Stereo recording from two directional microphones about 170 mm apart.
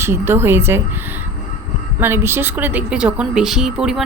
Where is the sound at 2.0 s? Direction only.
15° right (ahead or behind).